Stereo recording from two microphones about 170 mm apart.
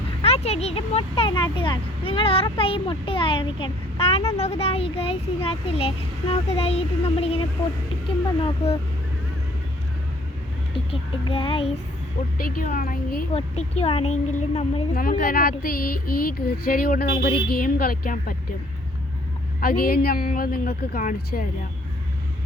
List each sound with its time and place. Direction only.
0.2 s speech: 35° left (ahead or behind)
10.9 s speech: 30° left (ahead or behind)
12.4 s speech: 60° left (ahead or behind)
13.3 s speech: 35° left (ahead or behind)
15.2 s speech: 60° left (ahead or behind)
19.5 s speech: 60° left (ahead or behind)